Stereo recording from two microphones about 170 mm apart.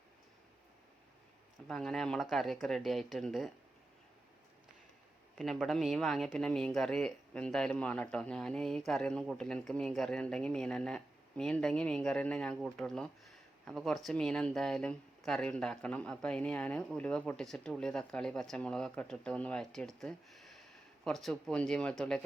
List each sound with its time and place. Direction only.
1.6 s speech: 5° left (ahead or behind)
5.4 s speech: centre (ahead or behind)